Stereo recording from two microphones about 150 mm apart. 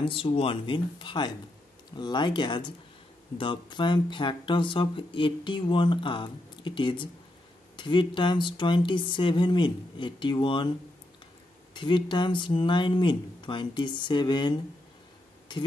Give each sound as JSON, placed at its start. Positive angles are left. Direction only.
{"t": 0.0, "sound": "speech", "side_deg": 35}
{"t": 11.7, "sound": "speech", "side_deg": 30}